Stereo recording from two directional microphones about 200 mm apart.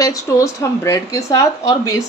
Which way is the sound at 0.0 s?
15° left (ahead or behind).